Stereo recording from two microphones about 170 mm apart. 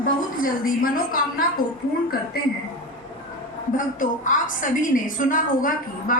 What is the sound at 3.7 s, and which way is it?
A woman's voice, 50° left (ahead or behind).